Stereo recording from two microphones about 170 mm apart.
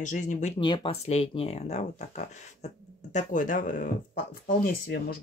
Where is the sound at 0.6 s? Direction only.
30° left (ahead or behind); by 3.8 s 55° left (ahead or behind).